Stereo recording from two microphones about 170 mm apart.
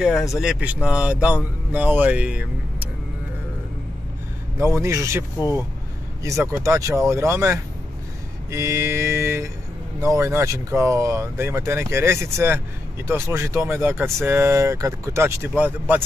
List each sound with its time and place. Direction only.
0.0 s speech: centre (ahead or behind)
4.8 s speech: 15° right (ahead or behind)
6.4 s speech: 20° right (ahead or behind)